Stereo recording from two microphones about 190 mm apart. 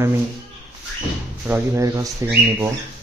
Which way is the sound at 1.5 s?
15° right (ahead or behind).